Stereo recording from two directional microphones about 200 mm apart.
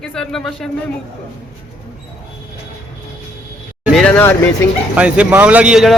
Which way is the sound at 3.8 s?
Centre (ahead or behind).